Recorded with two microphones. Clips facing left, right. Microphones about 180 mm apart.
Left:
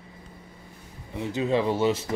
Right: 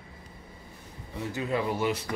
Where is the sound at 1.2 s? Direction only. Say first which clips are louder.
Left 5 dB; 20° left (ahead or behind).